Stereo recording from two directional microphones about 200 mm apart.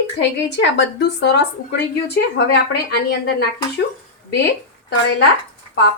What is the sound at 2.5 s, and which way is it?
Speech, 60° left (ahead or behind).